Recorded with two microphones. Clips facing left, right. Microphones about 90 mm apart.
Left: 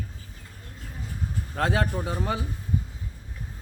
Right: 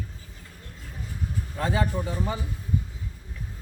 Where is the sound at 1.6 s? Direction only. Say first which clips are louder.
Left 1 dB; 70° left (ahead or behind).